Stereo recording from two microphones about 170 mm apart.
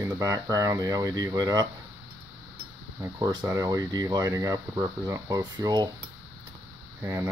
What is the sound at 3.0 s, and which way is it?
Speech, 20° right (ahead or behind).